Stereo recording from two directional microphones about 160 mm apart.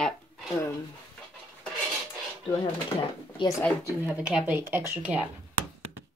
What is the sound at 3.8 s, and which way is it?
Speech, 10° right (ahead or behind).